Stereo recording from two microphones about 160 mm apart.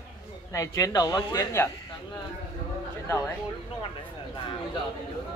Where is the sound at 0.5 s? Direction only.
20° left (ahead or behind).